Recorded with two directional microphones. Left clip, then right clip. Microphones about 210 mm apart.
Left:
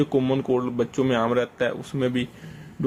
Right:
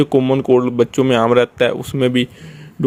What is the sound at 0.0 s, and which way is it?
A man's voice, 35° right (ahead or behind).